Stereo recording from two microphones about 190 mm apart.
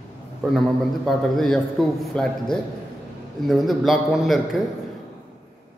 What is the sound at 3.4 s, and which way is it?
A man's voice, centre (ahead or behind).